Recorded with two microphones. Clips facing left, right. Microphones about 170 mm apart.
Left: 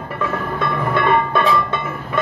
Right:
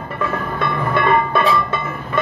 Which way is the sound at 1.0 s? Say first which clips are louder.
Right 1 dB; centre (ahead or behind).